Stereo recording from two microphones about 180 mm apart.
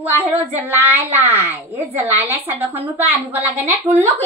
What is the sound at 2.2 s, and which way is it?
Speech, 10° right (ahead or behind).